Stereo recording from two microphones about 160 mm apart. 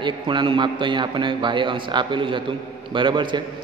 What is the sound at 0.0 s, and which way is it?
A man's voice, 30° right (ahead or behind).